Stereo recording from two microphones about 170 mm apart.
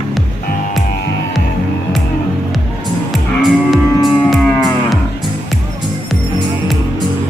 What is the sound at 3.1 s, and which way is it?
Livestock, centre (ahead or behind).